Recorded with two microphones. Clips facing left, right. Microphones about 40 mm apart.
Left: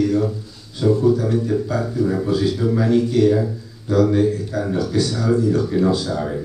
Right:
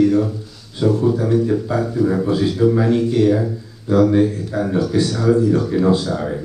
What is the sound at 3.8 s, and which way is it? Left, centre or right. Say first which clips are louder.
Speech: right 2 dB; right.